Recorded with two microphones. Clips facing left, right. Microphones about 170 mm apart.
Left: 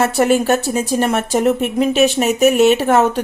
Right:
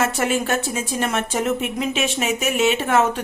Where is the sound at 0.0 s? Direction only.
40° left (ahead or behind).